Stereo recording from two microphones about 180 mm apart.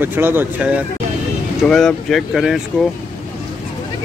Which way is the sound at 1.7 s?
5° left (ahead or behind).